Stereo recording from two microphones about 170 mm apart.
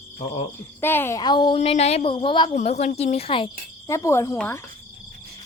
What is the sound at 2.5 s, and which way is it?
Speech, 40° left (ahead or behind).